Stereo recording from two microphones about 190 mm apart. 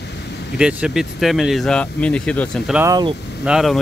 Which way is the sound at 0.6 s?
5° right (ahead or behind).